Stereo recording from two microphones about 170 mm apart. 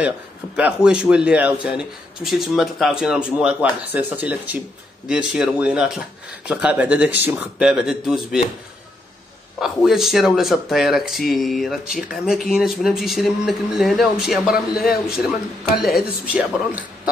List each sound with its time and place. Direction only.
0.6 s speech: 5° right (ahead or behind)
9.6 s speech: centre (ahead or behind)
14.8 s a man's voice: 60° left (ahead or behind)
15.8 s speech: 5° right (ahead or behind)